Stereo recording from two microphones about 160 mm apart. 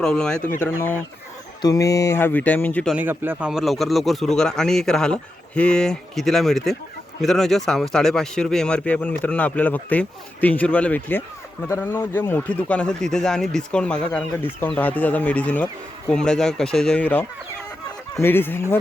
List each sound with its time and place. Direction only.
0.0 s speech: 5° left (ahead or behind)
2.9 s speech: 10° right (ahead or behind); by 18.8 s 15° left (ahead or behind)